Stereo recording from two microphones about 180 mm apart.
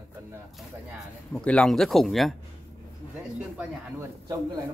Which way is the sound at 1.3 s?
5° left (ahead or behind).